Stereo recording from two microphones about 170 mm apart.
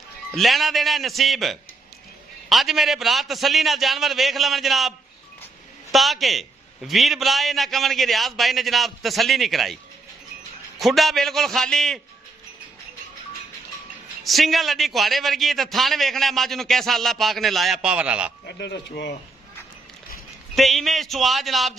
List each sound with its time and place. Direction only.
0.3 s a man's voice: centre (ahead or behind)
10.8 s a man's voice: centre (ahead or behind)
14.2 s a man's voice: centre (ahead or behind)
18.4 s speech: 80° left
20.5 s a man's voice: centre (ahead or behind)